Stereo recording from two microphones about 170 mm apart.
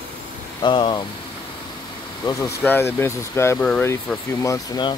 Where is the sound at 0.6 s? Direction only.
30° left (ahead or behind).